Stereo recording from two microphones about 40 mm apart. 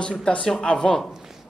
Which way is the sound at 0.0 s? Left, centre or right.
Left.